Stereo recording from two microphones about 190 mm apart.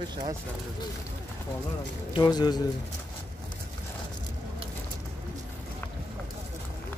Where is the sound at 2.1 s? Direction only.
20° left (ahead or behind).